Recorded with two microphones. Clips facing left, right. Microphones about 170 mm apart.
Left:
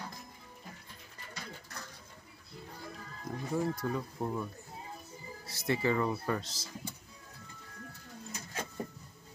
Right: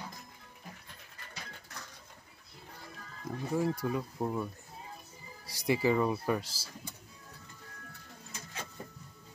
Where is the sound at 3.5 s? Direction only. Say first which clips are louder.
Right 2 dB; 10° right (ahead or behind).